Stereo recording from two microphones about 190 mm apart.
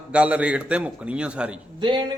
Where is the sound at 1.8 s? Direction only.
25° right (ahead or behind).